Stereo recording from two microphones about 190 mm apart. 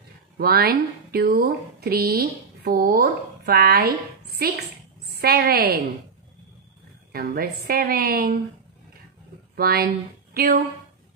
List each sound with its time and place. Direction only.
0.4 s a woman's voice: 55° right (ahead or behind)
7.1 s a woman's voice: 50° right (ahead or behind)
9.6 s speech: 50° right (ahead or behind)